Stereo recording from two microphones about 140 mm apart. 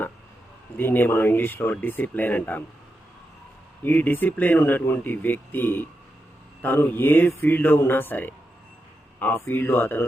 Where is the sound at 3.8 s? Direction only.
15° left (ahead or behind).